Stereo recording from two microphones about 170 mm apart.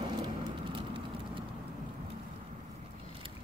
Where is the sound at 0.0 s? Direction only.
25° right (ahead or behind).